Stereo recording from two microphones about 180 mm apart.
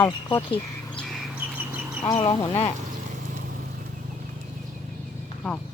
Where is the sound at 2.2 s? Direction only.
25° left (ahead or behind).